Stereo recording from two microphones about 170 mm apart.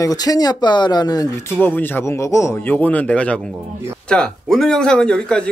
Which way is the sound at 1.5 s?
10° left (ahead or behind).